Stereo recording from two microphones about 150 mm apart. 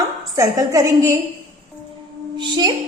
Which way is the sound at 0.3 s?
20° right (ahead or behind).